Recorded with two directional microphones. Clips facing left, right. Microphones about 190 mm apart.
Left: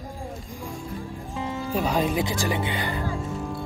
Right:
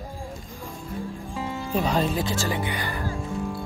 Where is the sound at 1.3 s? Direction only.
5° left (ahead or behind); by 3.1 s 20° left (ahead or behind).